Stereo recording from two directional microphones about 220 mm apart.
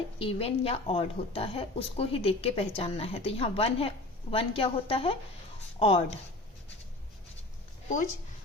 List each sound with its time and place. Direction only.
0.2 s a woman's voice: 25° left (ahead or behind)